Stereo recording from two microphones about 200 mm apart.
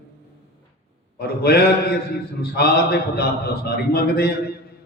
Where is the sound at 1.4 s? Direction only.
55° left (ahead or behind).